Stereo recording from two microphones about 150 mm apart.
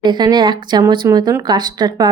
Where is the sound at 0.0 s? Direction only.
30° right (ahead or behind).